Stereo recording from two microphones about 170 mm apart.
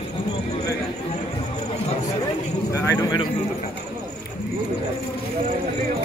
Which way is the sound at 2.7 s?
15° left (ahead or behind).